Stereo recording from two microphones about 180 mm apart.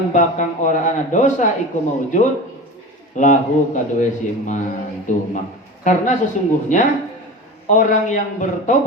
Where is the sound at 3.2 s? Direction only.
45° left (ahead or behind).